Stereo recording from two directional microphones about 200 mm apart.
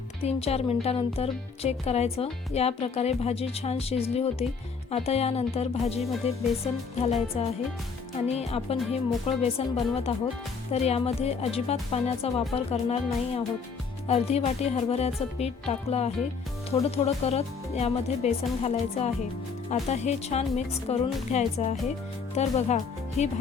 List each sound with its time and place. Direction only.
0.2 s speech: 30° left (ahead or behind)